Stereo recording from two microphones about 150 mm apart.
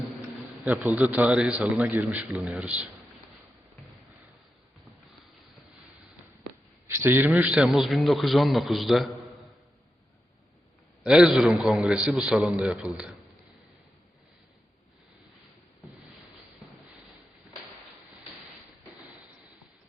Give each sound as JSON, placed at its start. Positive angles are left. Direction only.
{"t": 0.6, "sound": "a man's voice", "side_deg": -10}
{"t": 6.8, "sound": "a man's voice", "side_deg": -15}
{"t": 11.0, "sound": "a man's voice", "side_deg": -5}